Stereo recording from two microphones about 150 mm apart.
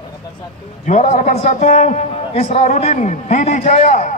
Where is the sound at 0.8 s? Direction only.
50° left (ahead or behind).